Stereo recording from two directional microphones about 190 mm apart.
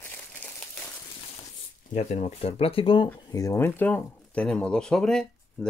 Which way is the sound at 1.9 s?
35° left (ahead or behind).